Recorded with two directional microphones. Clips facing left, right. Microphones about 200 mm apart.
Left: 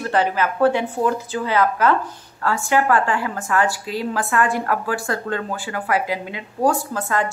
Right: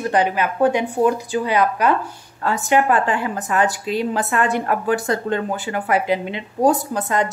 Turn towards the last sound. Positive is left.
turn(degrees=-20)  # may be behind; listen again after turning